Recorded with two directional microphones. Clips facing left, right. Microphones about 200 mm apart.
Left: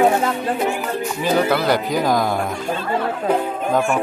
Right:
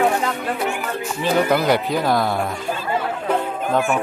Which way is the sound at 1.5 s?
5° right (ahead or behind).